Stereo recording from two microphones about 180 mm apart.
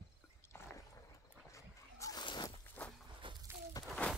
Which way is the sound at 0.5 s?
15° left (ahead or behind).